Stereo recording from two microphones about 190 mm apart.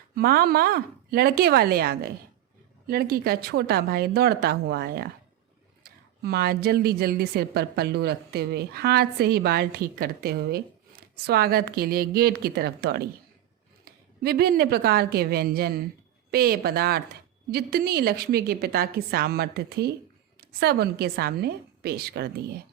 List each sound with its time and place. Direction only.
0.2 s a woman's voice: 50° right (ahead or behind)